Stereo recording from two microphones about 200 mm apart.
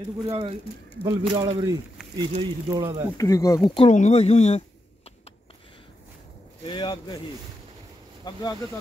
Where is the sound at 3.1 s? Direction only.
15° left (ahead or behind); by 4.6 s 35° left (ahead or behind).